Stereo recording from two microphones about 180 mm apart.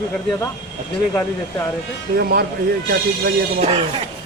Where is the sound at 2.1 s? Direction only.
60° right (ahead or behind).